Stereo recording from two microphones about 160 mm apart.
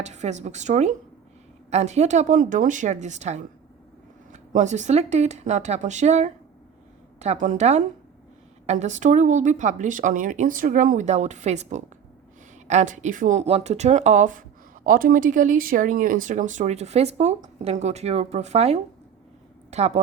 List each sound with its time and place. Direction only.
0.0 s speech: 45° right (ahead or behind)